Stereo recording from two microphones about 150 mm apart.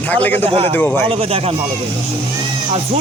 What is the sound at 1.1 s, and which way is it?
Speech, 40° right (ahead or behind).